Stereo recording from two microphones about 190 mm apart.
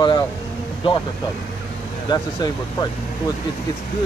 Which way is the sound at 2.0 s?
20° left (ahead or behind).